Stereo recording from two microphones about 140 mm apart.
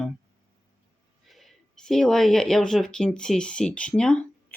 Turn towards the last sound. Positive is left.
turn(degrees=5)  # may be behind; listen again after turning